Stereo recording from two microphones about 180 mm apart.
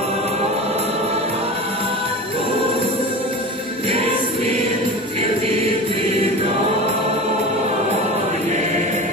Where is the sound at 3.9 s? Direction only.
30° right (ahead or behind).